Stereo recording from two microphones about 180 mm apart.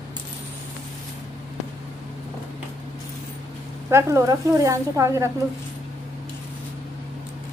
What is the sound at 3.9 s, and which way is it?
Speech, 15° right (ahead or behind).